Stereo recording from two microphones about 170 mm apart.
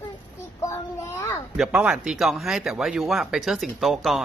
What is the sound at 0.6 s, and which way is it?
Child singing, 15° left (ahead or behind).